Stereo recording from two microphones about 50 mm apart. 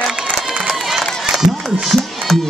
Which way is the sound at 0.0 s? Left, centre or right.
Centre.